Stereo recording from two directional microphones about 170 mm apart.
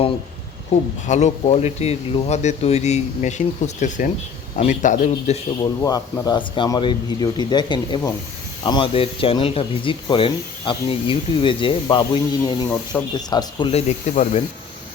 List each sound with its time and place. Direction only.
1.0 s speech: 45° left (ahead or behind)
5.8 s speech: 20° left (ahead or behind); by 14.4 s 40° left (ahead or behind)